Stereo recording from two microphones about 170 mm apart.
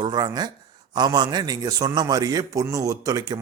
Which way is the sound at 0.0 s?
25° right (ahead or behind).